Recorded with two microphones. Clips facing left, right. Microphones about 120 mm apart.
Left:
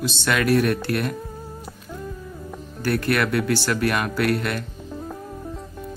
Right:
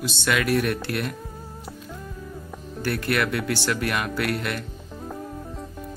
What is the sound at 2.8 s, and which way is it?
Speech, 15° right (ahead or behind).